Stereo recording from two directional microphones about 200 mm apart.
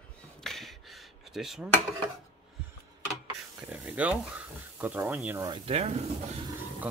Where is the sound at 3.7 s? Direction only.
5° right (ahead or behind).